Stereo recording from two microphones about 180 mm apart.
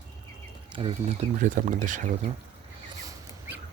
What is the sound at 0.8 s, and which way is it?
Speech, 30° right (ahead or behind).